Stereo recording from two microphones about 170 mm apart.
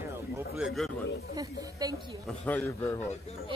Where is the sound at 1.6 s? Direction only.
20° right (ahead or behind).